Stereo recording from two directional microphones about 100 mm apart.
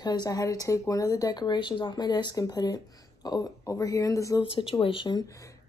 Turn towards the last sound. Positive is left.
turn(degrees=30)  # may be behind; listen again after turning